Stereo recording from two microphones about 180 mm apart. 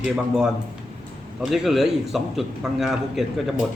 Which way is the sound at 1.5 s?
Centre (ahead or behind).